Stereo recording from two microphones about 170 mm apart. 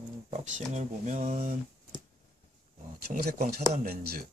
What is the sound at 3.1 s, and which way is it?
Speech, 65° right (ahead or behind).